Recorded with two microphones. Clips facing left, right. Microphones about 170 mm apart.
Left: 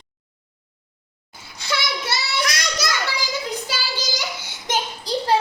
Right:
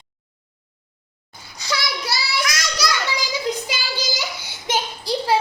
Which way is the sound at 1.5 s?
Centre (ahead or behind).